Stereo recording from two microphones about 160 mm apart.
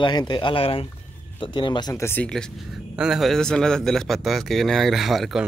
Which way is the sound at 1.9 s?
15° left (ahead or behind).